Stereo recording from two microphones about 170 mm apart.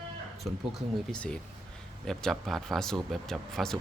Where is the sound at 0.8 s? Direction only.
5° left (ahead or behind).